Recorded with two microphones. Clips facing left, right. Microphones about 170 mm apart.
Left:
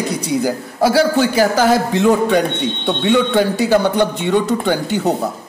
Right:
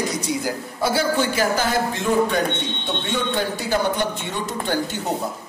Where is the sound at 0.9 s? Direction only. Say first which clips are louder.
Left 6 dB; 90° left.